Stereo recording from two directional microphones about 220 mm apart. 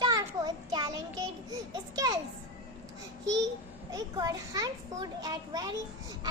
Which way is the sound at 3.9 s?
15° right (ahead or behind).